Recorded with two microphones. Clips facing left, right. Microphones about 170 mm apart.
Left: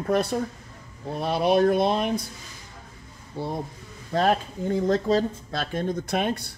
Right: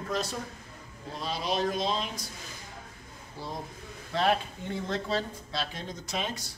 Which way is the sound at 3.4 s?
60° left (ahead or behind).